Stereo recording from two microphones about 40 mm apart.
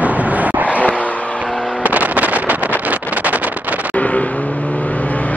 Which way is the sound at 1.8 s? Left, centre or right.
Right.